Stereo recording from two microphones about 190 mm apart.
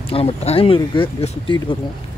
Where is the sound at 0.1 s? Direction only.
30° left (ahead or behind).